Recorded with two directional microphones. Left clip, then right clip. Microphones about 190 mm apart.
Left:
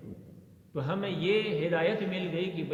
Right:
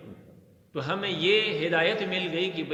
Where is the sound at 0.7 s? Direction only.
45° right (ahead or behind).